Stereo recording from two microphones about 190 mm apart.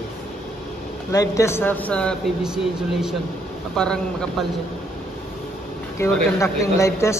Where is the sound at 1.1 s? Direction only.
15° left (ahead or behind).